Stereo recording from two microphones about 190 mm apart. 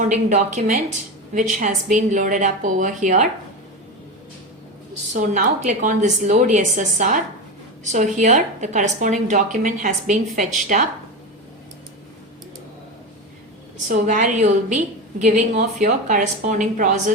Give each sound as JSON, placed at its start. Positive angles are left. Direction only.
{"t": 0.0, "sound": "a woman's voice", "side_deg": -40}
{"t": 5.1, "sound": "a woman's voice", "side_deg": -45}
{"t": 13.8, "sound": "a woman's voice", "side_deg": -40}